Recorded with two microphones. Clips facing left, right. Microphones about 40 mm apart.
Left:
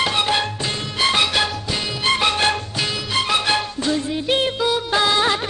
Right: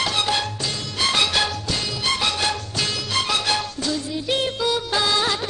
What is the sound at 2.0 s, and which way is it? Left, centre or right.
Music, left.